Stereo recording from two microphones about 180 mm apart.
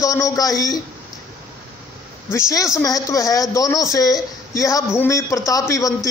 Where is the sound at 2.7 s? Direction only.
20° left (ahead or behind).